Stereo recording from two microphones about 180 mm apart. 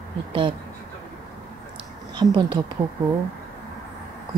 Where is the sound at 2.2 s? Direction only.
25° right (ahead or behind).